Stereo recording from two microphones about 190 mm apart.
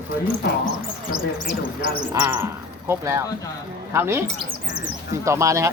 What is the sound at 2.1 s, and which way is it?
Speech, 15° right (ahead or behind).